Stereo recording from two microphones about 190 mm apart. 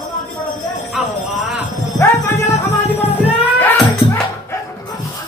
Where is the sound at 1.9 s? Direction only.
15° left (ahead or behind).